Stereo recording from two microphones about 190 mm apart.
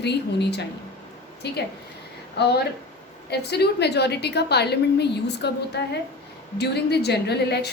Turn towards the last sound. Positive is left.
turn(degrees=60)  # may be behind; listen again after turning